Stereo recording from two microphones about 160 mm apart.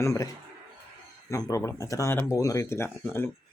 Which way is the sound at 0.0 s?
20° left (ahead or behind).